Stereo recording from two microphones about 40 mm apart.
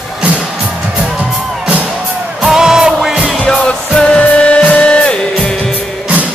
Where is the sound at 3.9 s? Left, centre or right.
Left.